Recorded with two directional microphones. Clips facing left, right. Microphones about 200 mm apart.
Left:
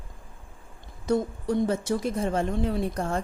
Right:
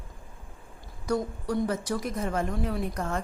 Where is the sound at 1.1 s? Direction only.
25° left (ahead or behind).